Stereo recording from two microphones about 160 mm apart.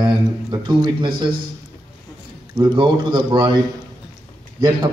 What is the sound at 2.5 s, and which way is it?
Speech, 30° right (ahead or behind).